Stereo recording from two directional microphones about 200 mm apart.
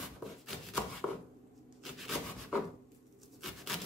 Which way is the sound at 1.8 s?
Centre (ahead or behind).